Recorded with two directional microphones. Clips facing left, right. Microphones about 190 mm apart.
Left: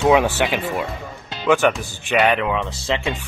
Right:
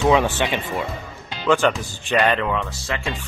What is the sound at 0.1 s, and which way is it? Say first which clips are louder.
Speech: left 2 dB; 10° left (ahead or behind).